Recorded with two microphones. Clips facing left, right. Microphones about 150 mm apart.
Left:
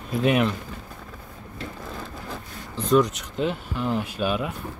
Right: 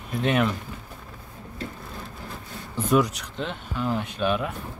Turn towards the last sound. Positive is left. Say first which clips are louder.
# even
turn(degrees=5)  # may be behind; listen again after turning